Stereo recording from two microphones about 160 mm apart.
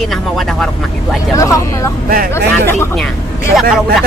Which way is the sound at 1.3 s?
20° left (ahead or behind).